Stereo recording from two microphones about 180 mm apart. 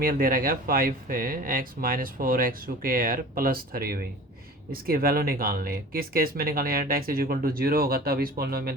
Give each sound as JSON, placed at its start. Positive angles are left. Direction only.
{"t": 0.0, "sound": "speech", "side_deg": -55}